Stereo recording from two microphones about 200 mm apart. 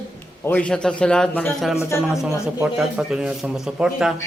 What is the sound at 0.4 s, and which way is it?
Speech, 5° left (ahead or behind).